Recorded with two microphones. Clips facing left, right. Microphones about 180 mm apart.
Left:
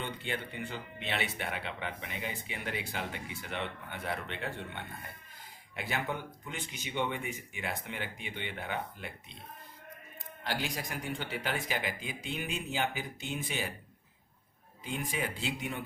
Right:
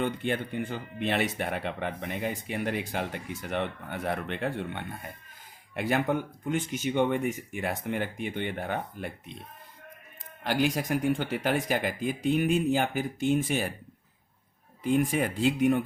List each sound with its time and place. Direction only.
0.0 s speech: 50° right (ahead or behind)
10.4 s speech: 55° right (ahead or behind)
14.9 s speech: 50° right (ahead or behind)